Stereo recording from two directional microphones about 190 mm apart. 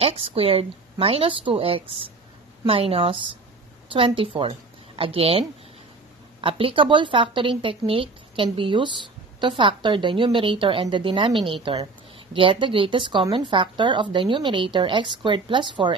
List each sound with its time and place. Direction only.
0.0 s a woman's voice: 30° right (ahead or behind)
6.4 s a woman's voice: 25° right (ahead or behind)